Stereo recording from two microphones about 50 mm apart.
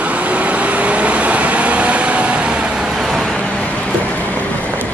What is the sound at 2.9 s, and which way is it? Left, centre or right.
Vehicle, centre.